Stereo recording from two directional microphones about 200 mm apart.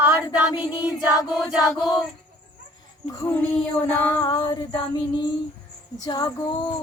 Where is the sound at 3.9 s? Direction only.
10° left (ahead or behind).